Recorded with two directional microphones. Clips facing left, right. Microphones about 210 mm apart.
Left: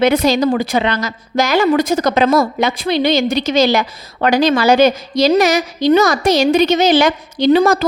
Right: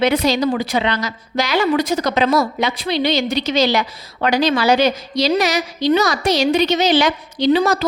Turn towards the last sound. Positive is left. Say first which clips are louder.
# left 4 dB
turn(degrees=50)  # may be behind; listen again after turning